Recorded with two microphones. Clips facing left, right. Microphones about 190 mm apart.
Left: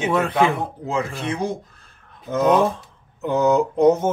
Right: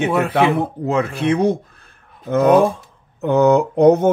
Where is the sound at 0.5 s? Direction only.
65° right (ahead or behind).